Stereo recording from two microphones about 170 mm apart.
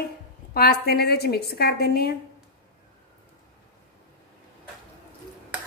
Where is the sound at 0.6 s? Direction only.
65° left (ahead or behind).